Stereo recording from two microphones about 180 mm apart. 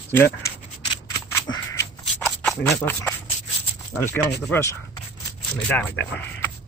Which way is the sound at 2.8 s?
10° left (ahead or behind).